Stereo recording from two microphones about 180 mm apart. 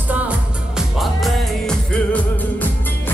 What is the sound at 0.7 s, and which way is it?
Music, centre (ahead or behind).